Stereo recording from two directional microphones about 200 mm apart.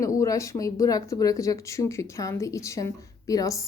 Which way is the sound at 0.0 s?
15° left (ahead or behind).